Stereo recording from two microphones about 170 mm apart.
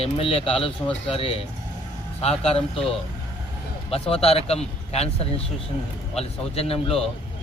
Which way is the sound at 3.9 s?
35° left (ahead or behind).